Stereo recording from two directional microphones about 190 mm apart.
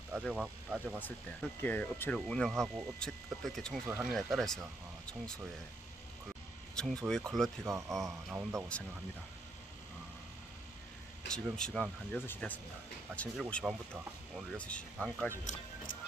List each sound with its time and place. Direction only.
0.3 s speech: 5° right (ahead or behind)
0.9 s speech: 10° left (ahead or behind)
6.7 s speech: centre (ahead or behind)
7.7 s speech: 15° right (ahead or behind)
11.3 s speech: 5° left (ahead or behind)